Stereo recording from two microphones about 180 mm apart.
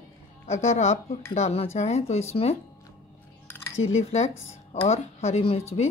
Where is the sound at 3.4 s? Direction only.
10° left (ahead or behind).